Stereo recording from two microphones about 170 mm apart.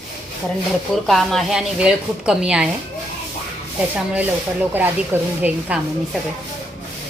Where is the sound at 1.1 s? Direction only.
Centre (ahead or behind).